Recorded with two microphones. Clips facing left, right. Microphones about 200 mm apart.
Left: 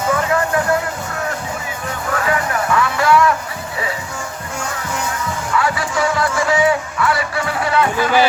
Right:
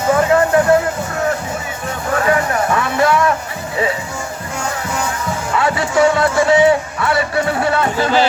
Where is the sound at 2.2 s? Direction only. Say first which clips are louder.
Right 4 dB; 30° right (ahead or behind).